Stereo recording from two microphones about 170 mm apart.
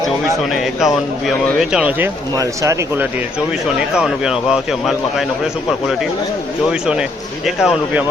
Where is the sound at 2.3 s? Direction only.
20° right (ahead or behind).